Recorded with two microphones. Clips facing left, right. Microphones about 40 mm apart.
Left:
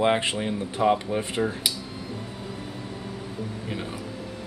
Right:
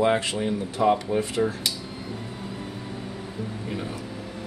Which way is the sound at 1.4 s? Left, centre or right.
Centre.